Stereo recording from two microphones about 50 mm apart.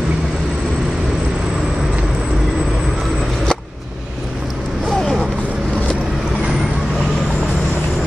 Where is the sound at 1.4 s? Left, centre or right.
Centre.